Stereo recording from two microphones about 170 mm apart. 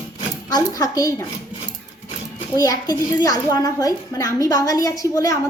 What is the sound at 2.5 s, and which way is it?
A woman's voice, 20° left (ahead or behind).